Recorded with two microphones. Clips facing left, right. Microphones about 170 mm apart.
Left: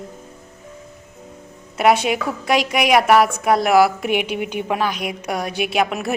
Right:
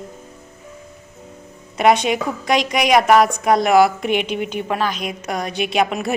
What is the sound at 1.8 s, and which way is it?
A woman's voice, 5° left (ahead or behind).